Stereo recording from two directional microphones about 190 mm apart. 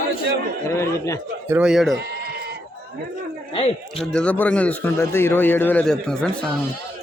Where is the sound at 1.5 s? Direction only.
5° right (ahead or behind).